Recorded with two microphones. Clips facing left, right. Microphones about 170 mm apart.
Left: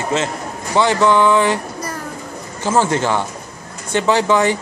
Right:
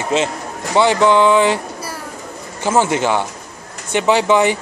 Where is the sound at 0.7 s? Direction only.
15° right (ahead or behind).